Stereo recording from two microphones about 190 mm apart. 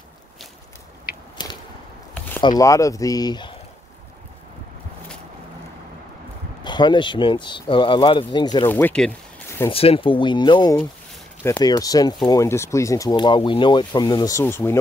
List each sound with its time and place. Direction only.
1.4 s whip: 25° left (ahead or behind)
2.4 s speech: 20° left (ahead or behind)
6.6 s speech: 25° left (ahead or behind)
8.6 s speech: 10° left (ahead or behind)
9.7 s speech: 30° left (ahead or behind); by 14.8 s 10° left (ahead or behind)